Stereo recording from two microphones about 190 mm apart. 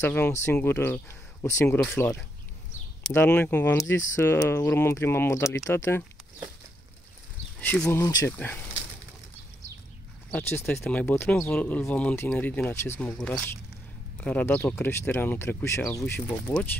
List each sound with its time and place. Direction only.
0.0 s speech: 10° left (ahead or behind)
7.6 s speech: 10° left (ahead or behind)
10.3 s speech: 10° left (ahead or behind)